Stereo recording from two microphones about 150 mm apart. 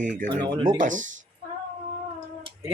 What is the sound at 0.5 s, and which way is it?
Speech, 30° right (ahead or behind).